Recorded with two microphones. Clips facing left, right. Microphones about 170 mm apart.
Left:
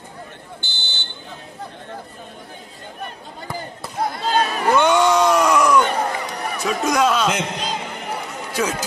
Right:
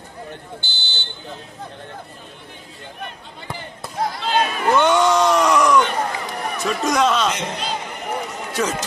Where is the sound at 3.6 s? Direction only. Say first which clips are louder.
Even; 40° left (ahead or behind).